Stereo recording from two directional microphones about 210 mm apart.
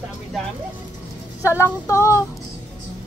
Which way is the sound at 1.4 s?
15° left (ahead or behind).